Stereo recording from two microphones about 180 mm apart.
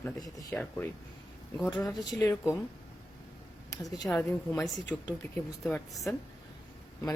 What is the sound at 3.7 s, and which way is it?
Speech, 20° left (ahead or behind).